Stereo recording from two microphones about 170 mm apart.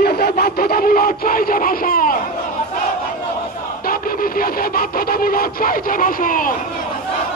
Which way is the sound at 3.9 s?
60° left (ahead or behind).